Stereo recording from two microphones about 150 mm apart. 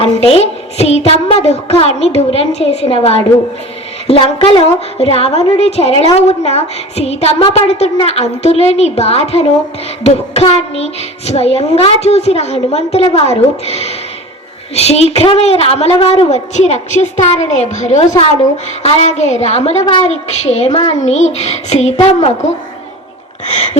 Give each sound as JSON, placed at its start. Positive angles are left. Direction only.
{"t": 0.0, "sound": "a woman's voice", "side_deg": 40}
{"t": 23.5, "sound": "a woman's voice", "side_deg": 50}